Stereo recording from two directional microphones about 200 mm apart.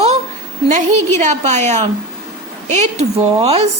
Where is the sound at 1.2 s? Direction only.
35° right (ahead or behind).